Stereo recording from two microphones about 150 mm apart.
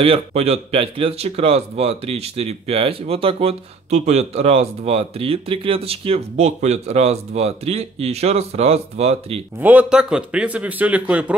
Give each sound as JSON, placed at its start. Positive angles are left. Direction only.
{"t": 0.0, "sound": "speech", "side_deg": -40}
{"t": 9.6, "sound": "a man's voice", "side_deg": -10}